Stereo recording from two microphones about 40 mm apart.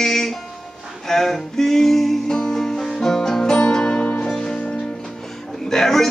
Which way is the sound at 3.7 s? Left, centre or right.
Left.